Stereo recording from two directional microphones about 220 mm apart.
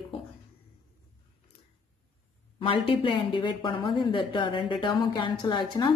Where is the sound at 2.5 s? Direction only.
25° left (ahead or behind).